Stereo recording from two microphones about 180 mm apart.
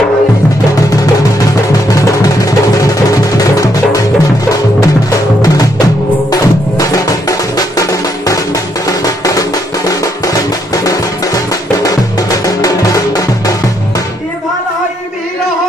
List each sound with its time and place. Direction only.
1.5 s music: 20° left (ahead or behind)
5.4 s music: 20° left (ahead or behind)